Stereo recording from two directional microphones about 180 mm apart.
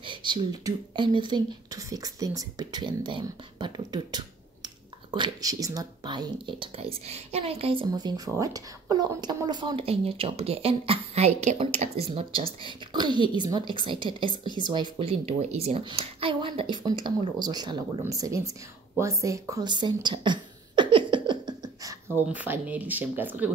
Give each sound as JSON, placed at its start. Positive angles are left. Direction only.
{"t": 0.0, "sound": "speech", "side_deg": -25}
{"t": 18.9, "sound": "throat clearing", "side_deg": -15}
{"t": 22.1, "sound": "speech", "side_deg": -10}